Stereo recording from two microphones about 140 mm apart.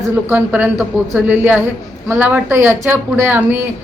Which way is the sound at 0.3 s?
10° right (ahead or behind).